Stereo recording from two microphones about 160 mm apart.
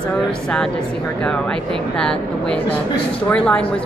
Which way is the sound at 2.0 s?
5° left (ahead or behind).